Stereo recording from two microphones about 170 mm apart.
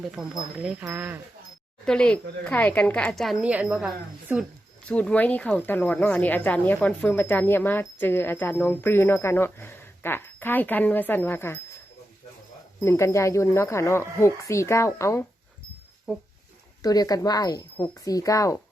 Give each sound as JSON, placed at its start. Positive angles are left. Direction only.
{"t": 0.2, "sound": "a woman's voice", "side_deg": -5}
{"t": 1.8, "sound": "speech", "side_deg": 5}
{"t": 3.4, "sound": "a woman's voice", "side_deg": -10}
{"t": 4.9, "sound": "speech", "side_deg": 5}
{"t": 12.8, "sound": "speech", "side_deg": 15}
{"t": 16.8, "sound": "speech", "side_deg": 20}